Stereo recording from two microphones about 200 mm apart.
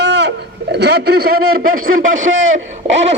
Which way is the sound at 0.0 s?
60° right (ahead or behind).